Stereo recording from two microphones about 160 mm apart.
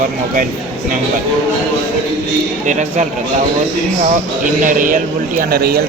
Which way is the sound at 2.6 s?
50° right (ahead or behind).